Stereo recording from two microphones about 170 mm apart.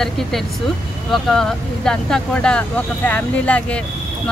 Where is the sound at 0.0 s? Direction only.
Centre (ahead or behind).